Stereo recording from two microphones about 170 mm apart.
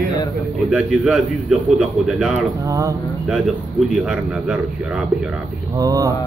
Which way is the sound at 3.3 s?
5° right (ahead or behind).